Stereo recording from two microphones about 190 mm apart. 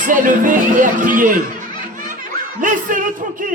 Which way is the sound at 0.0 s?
45° right (ahead or behind).